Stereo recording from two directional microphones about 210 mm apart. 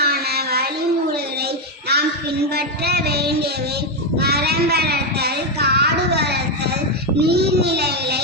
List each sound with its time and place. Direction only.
0.0 s child singing: 50° right (ahead or behind)
1.9 s child singing: 50° right (ahead or behind)